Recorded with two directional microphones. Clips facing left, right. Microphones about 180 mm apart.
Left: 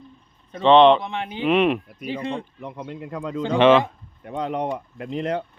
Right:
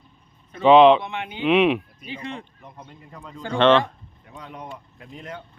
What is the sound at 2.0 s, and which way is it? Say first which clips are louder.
Speech: left 7 dB; 35° left (ahead or behind).